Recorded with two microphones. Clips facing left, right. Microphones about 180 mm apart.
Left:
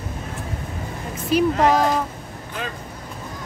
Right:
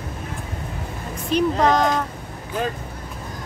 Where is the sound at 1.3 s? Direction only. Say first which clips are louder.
Left 1 dB; 5° left (ahead or behind).